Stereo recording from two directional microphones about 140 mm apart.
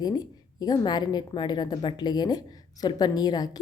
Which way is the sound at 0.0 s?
30° left (ahead or behind).